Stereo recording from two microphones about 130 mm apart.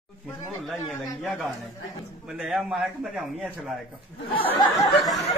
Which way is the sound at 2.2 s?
5° right (ahead or behind).